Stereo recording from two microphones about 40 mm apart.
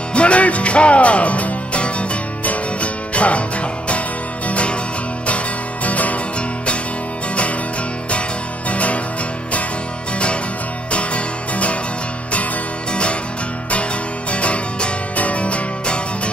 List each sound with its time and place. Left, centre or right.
0.1 s music: left
4.5 s music: left
5.9 s music: left
8.6 s music: left
10.9 s music: left
14.3 s music: left